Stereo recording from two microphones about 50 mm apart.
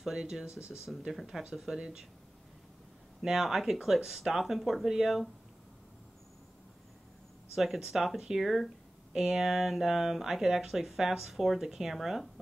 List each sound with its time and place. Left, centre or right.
0.0 s speech: centre
3.2 s speech: centre
7.5 s speech: centre